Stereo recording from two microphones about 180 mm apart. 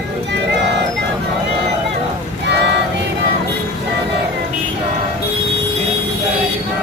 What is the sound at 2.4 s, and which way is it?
Music, 70° right (ahead or behind).